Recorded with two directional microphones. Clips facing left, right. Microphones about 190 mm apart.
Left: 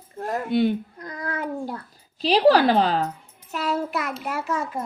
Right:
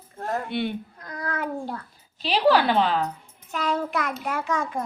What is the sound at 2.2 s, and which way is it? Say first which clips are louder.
Speech: left 3 dB; 40° left (ahead or behind).